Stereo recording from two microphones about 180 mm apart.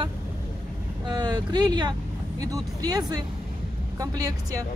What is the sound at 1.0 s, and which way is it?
Speech, 25° right (ahead or behind).